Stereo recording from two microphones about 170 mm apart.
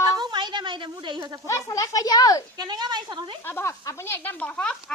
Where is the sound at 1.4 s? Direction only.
20° left (ahead or behind).